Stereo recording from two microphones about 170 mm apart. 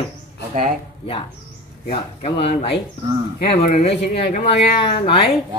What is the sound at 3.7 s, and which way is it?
Speech, 40° left (ahead or behind).